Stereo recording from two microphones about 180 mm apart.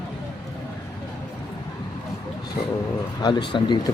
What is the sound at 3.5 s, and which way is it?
Speech, 25° left (ahead or behind).